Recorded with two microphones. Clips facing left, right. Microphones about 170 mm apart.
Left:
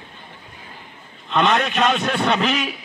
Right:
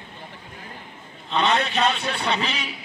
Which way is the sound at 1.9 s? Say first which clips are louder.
Left 5 dB; 50° left (ahead or behind).